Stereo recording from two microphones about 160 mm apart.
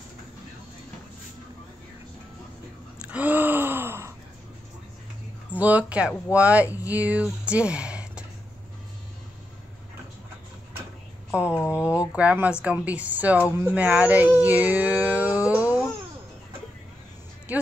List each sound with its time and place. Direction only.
3.1 s gasp: 10° right (ahead or behind)
5.6 s speech: 10° right (ahead or behind)
11.8 s speech: 15° left (ahead or behind)
12.1 s speech: 10° right (ahead or behind)
17.5 s music: 10° right (ahead or behind)